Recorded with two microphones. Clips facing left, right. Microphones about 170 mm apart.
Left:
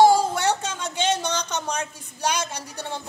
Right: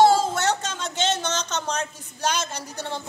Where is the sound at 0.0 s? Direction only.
15° left (ahead or behind).